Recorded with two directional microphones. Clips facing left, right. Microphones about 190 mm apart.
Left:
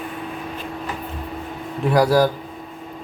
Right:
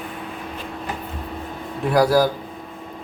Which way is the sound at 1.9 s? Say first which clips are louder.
Even; 5° right (ahead or behind).